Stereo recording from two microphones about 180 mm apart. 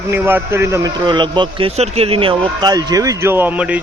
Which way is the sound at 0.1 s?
10° right (ahead or behind).